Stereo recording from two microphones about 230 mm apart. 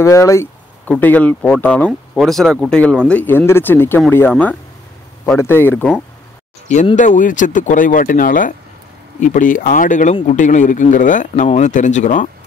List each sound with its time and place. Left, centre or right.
0.0 s speech: centre
6.7 s speech: left